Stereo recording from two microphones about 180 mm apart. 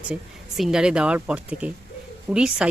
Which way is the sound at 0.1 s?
5° right (ahead or behind).